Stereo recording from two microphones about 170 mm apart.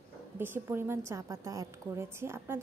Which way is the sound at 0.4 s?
15° right (ahead or behind).